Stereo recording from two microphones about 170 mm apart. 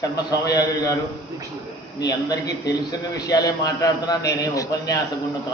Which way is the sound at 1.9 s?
20° left (ahead or behind).